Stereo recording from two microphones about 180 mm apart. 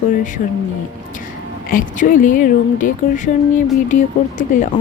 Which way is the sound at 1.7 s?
50° left (ahead or behind).